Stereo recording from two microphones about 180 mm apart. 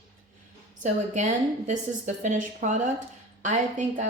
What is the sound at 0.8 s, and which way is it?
A woman's voice, 40° right (ahead or behind).